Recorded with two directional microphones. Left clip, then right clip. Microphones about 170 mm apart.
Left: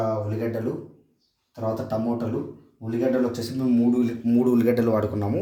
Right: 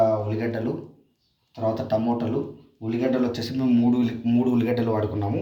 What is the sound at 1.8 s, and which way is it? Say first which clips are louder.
A man's voice: right 3 dB; 25° left (ahead or behind).